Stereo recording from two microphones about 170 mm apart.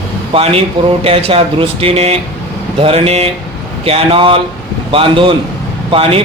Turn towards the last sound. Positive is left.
turn(degrees=-35)  # may be behind; listen again after turning